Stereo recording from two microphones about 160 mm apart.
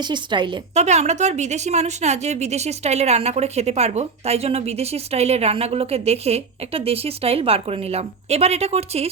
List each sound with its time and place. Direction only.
0.1 s a woman's voice: 30° right (ahead or behind)
0.7 s a woman's voice: 45° right (ahead or behind)